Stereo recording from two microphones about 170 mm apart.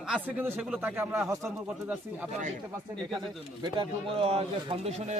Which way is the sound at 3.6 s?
30° right (ahead or behind).